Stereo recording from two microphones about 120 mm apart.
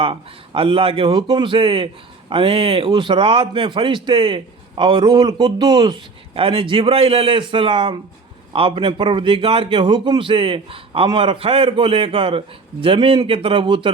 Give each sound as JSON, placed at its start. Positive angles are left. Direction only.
{"t": 0.0, "sound": "a man's voice", "side_deg": -50}
{"t": 6.3, "sound": "a man's voice", "side_deg": -50}